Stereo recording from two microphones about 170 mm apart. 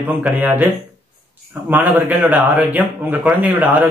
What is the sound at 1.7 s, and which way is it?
A man's voice, 10° right (ahead or behind).